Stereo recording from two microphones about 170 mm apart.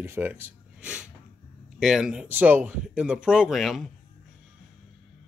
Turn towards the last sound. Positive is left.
turn(degrees=0)  # may be behind; listen again after turning